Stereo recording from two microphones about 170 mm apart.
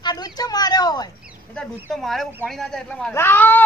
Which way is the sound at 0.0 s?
20° left (ahead or behind).